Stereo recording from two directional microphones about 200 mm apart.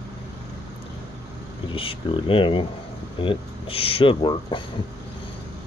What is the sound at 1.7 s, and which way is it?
Speech, 25° left (ahead or behind).